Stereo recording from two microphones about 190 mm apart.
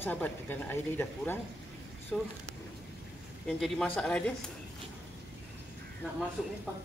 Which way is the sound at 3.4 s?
Centre (ahead or behind).